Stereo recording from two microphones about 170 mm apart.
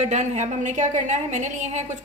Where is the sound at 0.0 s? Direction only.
45° right (ahead or behind).